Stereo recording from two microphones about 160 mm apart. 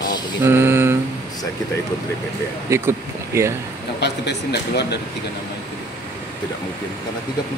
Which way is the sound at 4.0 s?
90° left.